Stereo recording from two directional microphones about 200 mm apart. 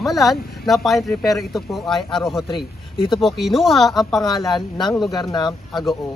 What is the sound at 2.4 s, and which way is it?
Speech, 25° left (ahead or behind).